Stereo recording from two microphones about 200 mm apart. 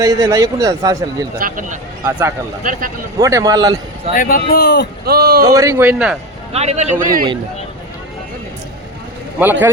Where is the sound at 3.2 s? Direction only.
15° right (ahead or behind).